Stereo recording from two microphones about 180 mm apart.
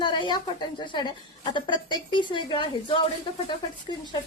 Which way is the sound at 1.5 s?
25° left (ahead or behind).